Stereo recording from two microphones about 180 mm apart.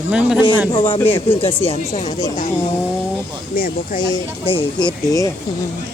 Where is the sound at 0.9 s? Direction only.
10° left (ahead or behind).